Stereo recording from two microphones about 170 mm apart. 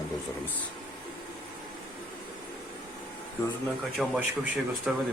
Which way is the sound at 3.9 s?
5° right (ahead or behind).